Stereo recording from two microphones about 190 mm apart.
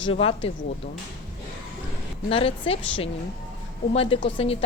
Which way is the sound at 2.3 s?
30° left (ahead or behind).